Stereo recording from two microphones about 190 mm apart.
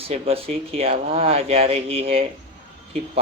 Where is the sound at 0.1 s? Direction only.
30° right (ahead or behind).